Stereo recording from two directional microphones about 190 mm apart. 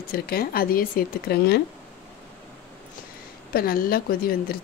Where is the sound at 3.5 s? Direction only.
50° left (ahead or behind).